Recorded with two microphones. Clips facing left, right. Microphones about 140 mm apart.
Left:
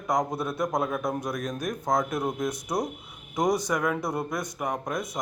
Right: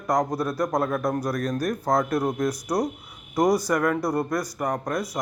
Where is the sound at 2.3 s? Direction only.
20° left (ahead or behind).